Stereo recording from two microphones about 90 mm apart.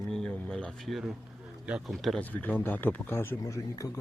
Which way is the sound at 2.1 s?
15° left (ahead or behind).